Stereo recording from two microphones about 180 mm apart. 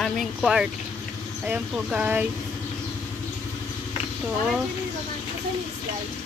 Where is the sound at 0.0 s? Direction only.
Centre (ahead or behind).